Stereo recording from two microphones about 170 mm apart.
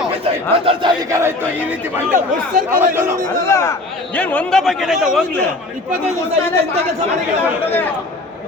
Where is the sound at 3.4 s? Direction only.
15° left (ahead or behind); by 5.2 s centre (ahead or behind).